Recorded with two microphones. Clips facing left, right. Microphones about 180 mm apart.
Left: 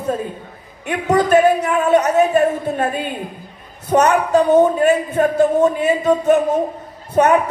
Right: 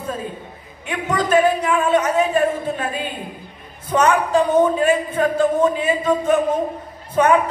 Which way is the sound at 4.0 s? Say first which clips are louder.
Left 2 dB; 40° left (ahead or behind).